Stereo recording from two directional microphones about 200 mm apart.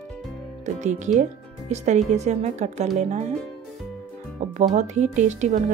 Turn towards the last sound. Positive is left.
turn(degrees=-35)  # may be behind; listen again after turning